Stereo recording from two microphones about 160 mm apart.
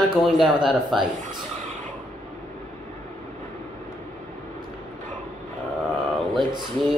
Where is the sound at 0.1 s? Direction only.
Centre (ahead or behind).